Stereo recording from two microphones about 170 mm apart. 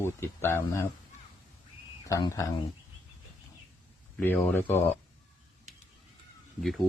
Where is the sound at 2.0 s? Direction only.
20° left (ahead or behind).